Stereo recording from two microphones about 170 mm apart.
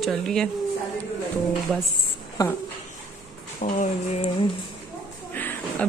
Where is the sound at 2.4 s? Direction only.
20° left (ahead or behind).